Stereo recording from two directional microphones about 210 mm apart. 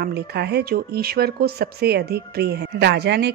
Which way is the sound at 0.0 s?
50° right (ahead or behind).